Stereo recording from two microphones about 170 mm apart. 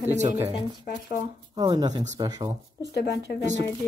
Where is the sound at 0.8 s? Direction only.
60° left (ahead or behind).